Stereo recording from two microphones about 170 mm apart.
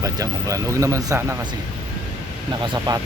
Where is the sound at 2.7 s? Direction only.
20° right (ahead or behind).